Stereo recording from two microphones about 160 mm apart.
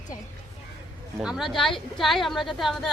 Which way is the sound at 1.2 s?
5° right (ahead or behind).